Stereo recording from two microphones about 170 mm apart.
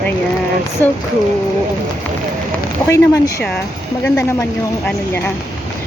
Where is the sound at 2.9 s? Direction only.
20° left (ahead or behind).